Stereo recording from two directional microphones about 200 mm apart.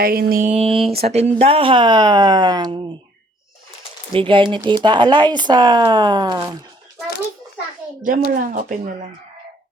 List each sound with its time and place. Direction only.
0.0 s speech: 50° right (ahead or behind); by 2.8 s 20° right (ahead or behind)
4.1 s speech: 25° right (ahead or behind)
8.3 s speech: 40° right (ahead or behind)